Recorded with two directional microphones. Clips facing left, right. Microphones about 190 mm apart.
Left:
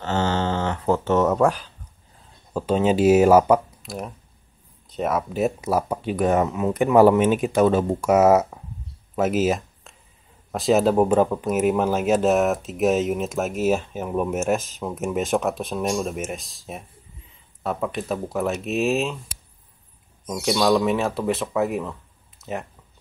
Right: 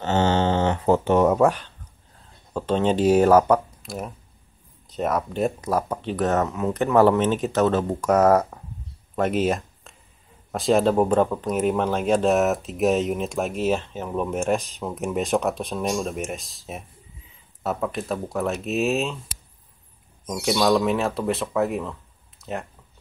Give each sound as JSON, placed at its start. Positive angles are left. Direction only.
{"t": 0.0, "sound": "mantra", "side_deg": -20}
{"t": 1.4, "sound": "speech", "side_deg": 0}
{"t": 9.1, "sound": "a sound", "side_deg": 5}
{"t": 10.5, "sound": "speech", "side_deg": 0}
{"t": 20.2, "sound": "speech", "side_deg": 0}